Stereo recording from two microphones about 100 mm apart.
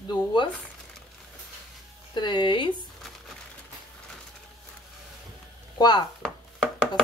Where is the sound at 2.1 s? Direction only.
50° left (ahead or behind).